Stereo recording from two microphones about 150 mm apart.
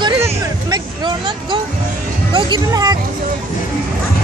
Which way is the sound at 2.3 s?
30° right (ahead or behind).